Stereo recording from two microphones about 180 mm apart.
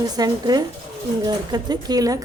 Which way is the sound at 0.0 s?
20° right (ahead or behind).